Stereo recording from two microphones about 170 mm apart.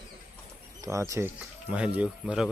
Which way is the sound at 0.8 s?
20° right (ahead or behind).